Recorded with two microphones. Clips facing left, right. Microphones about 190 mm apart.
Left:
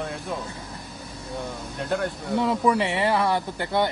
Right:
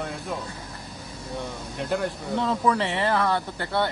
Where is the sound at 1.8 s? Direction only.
Centre (ahead or behind).